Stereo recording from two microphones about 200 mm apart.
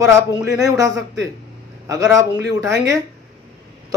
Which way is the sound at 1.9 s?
15° right (ahead or behind).